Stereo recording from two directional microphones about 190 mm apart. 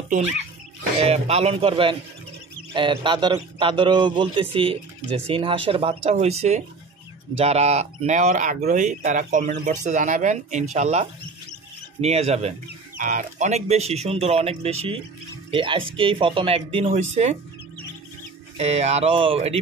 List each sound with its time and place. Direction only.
1.0 s speech: 35° right (ahead or behind)
12.6 s speech: 45° right (ahead or behind)
18.6 s speech: 35° right (ahead or behind)